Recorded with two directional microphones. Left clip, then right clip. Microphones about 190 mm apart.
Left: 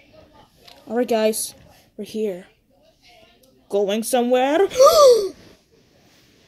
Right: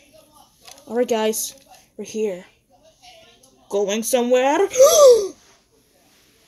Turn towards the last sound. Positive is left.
turn(degrees=10)  # may be behind; listen again after turning